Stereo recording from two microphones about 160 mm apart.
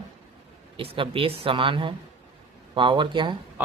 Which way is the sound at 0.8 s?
35° right (ahead or behind).